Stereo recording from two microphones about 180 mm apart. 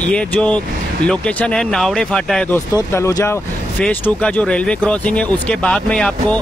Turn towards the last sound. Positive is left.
turn(degrees=5)  # may be behind; listen again after turning